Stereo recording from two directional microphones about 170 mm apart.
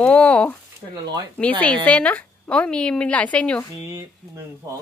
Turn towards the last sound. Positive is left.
turn(degrees=5)  # may be behind; listen again after turning